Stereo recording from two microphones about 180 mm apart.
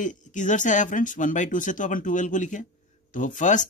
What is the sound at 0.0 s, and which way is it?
Speech, 45° left (ahead or behind).